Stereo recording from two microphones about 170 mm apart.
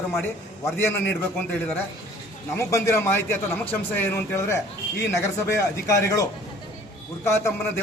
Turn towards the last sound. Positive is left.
turn(degrees=15)  # may be behind; listen again after turning